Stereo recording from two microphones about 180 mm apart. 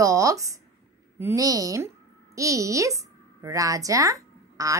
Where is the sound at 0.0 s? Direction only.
20° right (ahead or behind).